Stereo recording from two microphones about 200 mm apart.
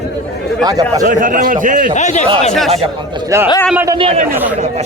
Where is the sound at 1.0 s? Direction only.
40° right (ahead or behind).